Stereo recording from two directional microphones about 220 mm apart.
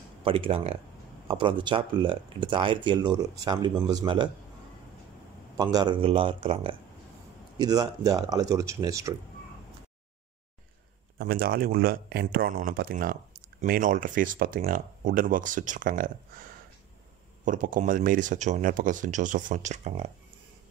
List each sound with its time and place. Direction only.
0.2 s speech: 25° right (ahead or behind)
5.6 s speech: 15° right (ahead or behind)
11.1 s speech: 45° right (ahead or behind)